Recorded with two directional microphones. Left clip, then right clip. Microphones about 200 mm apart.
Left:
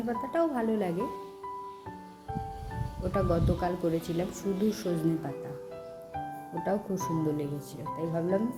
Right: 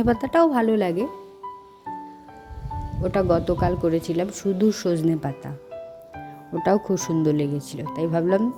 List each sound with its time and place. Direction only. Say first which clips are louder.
0.0 s speech: right 10 dB; 55° right (ahead or behind)
3.0 s speech: right 8 dB; 45° right (ahead or behind)
6.6 s speech: right 10 dB; 50° right (ahead or behind)